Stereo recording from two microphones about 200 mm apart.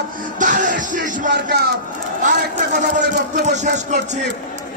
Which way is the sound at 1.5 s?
55° right (ahead or behind).